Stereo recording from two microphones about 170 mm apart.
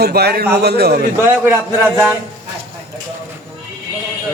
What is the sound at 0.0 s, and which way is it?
Speech, 70° right (ahead or behind).